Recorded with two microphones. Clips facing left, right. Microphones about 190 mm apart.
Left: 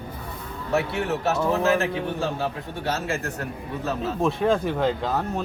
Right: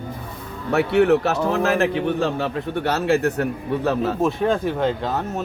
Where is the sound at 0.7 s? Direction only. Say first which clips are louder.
Right 9 dB; 60° right (ahead or behind).